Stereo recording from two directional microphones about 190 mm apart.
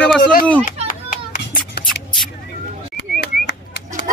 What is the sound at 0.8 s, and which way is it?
Clapping, 45° left (ahead or behind).